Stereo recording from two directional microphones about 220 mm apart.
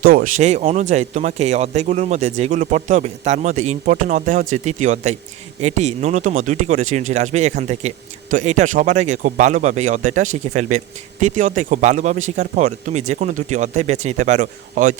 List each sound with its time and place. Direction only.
0.0 s speech: 40° right (ahead or behind)